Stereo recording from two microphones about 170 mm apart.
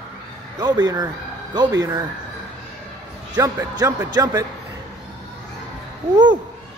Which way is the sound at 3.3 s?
20° right (ahead or behind).